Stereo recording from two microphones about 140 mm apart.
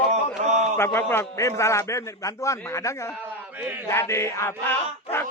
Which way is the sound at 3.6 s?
10° right (ahead or behind).